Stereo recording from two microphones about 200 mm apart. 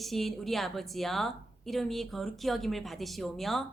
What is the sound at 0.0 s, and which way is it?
Speech, centre (ahead or behind).